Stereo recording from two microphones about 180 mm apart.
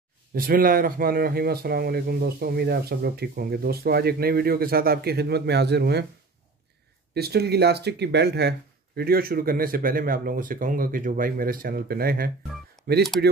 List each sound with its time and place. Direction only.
0.3 s speech: 50° right (ahead or behind)
7.2 s speech: 60° right (ahead or behind)